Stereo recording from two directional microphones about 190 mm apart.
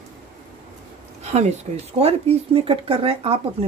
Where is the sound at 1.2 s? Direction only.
35° right (ahead or behind).